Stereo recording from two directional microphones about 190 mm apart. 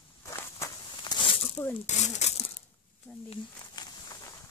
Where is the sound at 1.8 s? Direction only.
35° left (ahead or behind).